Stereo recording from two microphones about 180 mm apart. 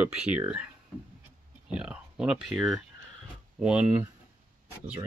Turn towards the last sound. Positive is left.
turn(degrees=-5)  # may be behind; listen again after turning